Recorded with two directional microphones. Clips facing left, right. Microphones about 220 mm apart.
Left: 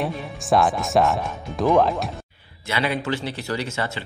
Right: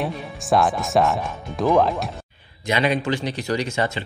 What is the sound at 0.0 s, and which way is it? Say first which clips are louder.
Speech: even; centre (ahead or behind).